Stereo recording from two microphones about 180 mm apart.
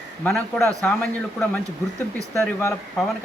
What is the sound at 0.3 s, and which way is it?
Speech, 5° left (ahead or behind).